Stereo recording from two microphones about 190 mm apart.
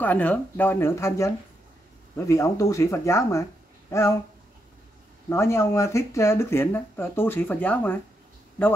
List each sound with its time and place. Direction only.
0.0 s speech: 10° left (ahead or behind)
5.3 s speech: 15° left (ahead or behind)